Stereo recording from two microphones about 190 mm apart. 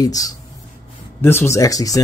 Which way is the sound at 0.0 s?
20° left (ahead or behind).